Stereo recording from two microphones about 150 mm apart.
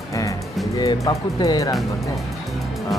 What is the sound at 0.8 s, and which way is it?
Speech, 25° left (ahead or behind).